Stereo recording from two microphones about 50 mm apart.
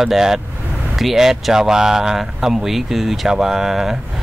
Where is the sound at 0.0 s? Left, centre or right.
Centre.